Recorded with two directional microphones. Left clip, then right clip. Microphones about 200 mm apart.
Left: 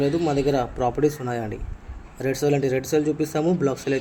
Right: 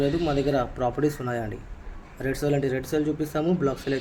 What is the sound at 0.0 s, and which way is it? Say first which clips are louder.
Speech: left 3 dB; 15° left (ahead or behind).